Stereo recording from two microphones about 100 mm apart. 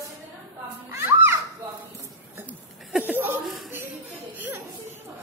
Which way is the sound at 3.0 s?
20° right (ahead or behind).